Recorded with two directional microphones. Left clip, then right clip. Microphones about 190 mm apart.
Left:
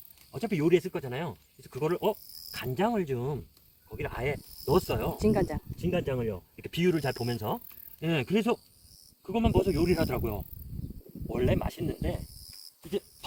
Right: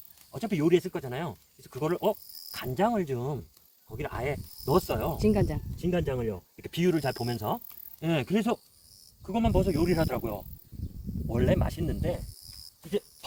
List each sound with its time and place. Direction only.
0.3 s speech: 15° right (ahead or behind)
5.1 s speech: 10° left (ahead or behind)
5.8 s speech: 15° right (ahead or behind)